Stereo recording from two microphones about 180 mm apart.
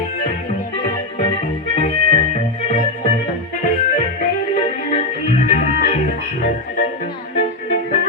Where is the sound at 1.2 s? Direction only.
35° left (ahead or behind).